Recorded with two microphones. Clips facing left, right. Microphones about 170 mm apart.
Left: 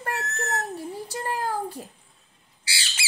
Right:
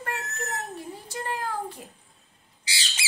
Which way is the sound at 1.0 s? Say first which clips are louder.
Left 2 dB; 35° left (ahead or behind).